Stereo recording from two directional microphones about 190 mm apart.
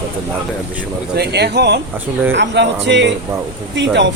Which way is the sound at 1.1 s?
60° right (ahead or behind).